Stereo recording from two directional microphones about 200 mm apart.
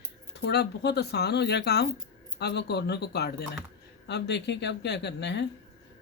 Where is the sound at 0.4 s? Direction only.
55° left (ahead or behind).